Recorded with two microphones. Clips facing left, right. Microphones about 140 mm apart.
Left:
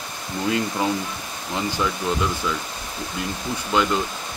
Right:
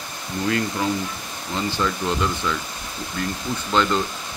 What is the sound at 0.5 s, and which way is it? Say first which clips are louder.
Speech: even; 15° left (ahead or behind).